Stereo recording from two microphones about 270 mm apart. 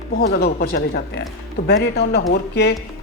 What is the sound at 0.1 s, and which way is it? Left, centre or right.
A woman's voice, left.